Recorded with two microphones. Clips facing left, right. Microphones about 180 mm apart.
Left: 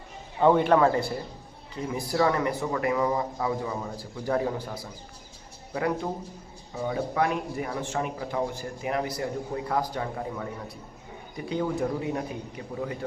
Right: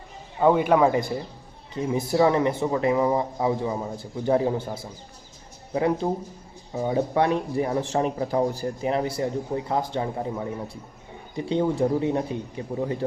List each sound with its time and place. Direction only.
0.3 s a man's voice: 5° right (ahead or behind); by 13.1 s 30° right (ahead or behind)